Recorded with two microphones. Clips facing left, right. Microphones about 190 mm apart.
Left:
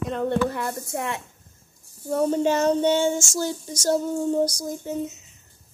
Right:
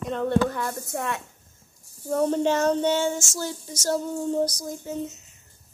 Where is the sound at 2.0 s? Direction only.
5° left (ahead or behind).